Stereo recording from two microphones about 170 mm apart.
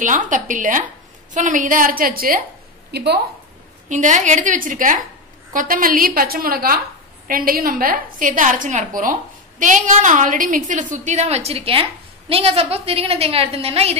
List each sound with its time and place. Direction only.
0.0 s a woman's voice: 50° right (ahead or behind)
2.9 s a woman's voice: 75° right (ahead or behind)
3.9 s a woman's voice: 45° right (ahead or behind)